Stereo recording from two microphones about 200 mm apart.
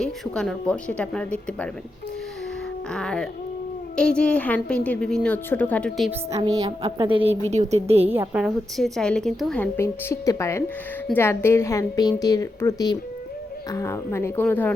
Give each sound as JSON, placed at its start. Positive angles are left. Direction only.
{"t": 0.0, "sound": "a woman's voice", "side_deg": 5}
{"t": 2.9, "sound": "a woman's voice", "side_deg": 5}
{"t": 6.3, "sound": "a woman's voice", "side_deg": -20}
{"t": 8.1, "sound": "a woman's voice", "side_deg": -10}